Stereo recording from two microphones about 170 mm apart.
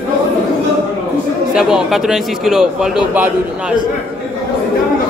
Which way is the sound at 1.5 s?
5° right (ahead or behind).